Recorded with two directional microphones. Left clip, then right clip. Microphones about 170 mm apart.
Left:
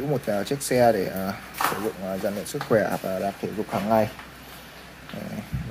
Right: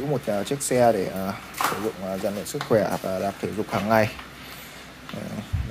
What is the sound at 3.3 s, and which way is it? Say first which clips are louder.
Speech: right 1 dB; 20° right (ahead or behind).